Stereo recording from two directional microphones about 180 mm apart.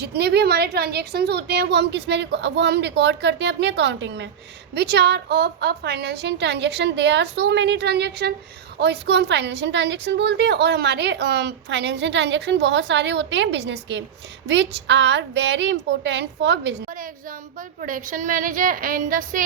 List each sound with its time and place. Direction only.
0.0 s a woman's voice: 65° right (ahead or behind)
4.7 s a woman's voice: 65° right (ahead or behind)
17.7 s a woman's voice: 50° right (ahead or behind)